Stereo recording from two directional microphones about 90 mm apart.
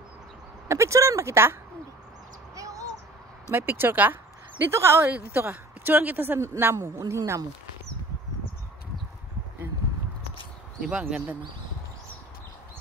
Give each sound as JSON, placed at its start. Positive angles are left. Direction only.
{"t": 0.7, "sound": "speech", "side_deg": -35}
{"t": 2.5, "sound": "a sound", "side_deg": -40}
{"t": 3.5, "sound": "a woman's voice", "side_deg": -25}
{"t": 10.9, "sound": "speech", "side_deg": -10}